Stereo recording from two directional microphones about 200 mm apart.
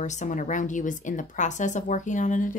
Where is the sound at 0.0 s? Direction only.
35° left (ahead or behind).